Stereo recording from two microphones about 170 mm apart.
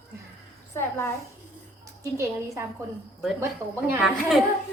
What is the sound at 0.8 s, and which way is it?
Speech, 15° left (ahead or behind).